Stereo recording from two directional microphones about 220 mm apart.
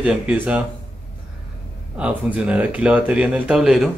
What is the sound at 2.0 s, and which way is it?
Speech, 5° right (ahead or behind).